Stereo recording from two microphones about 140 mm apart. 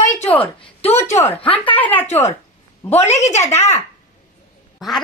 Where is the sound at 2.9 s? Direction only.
55° left (ahead or behind).